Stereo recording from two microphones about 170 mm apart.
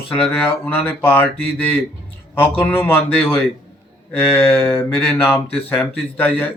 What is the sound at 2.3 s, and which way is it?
Speech, 10° left (ahead or behind).